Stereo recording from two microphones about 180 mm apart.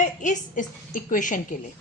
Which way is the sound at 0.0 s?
45° left (ahead or behind).